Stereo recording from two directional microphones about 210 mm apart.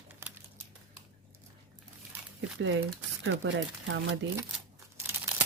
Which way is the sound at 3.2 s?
65° right (ahead or behind).